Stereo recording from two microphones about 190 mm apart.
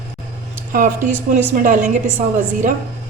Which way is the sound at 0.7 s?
45° right (ahead or behind).